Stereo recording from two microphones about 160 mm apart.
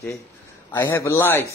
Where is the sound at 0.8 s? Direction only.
15° left (ahead or behind).